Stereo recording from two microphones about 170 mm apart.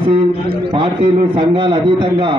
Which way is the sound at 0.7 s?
25° right (ahead or behind).